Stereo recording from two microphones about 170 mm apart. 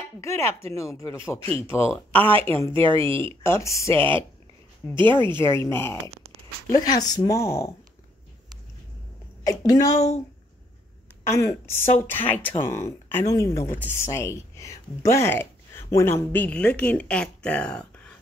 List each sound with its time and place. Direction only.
0.2 s speech: 15° left (ahead or behind)
1.4 s speech: 35° right (ahead or behind)
1.9 s speech: 10° left (ahead or behind)
2.8 s speech: 30° right (ahead or behind)
3.2 s speech: 15° left (ahead or behind)
9.4 s speech: 20° left (ahead or behind)
11.2 s speech: 15° left (ahead or behind)